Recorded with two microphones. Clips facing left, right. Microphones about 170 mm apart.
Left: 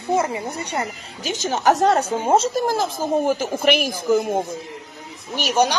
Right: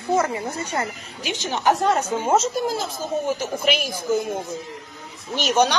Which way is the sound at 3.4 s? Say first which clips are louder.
Left 4 dB; 50° left (ahead or behind).